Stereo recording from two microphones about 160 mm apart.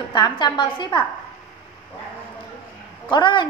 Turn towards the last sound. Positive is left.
turn(degrees=30)  # may be behind; listen again after turning